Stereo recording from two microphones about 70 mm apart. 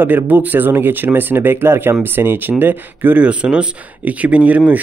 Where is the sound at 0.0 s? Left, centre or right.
Right.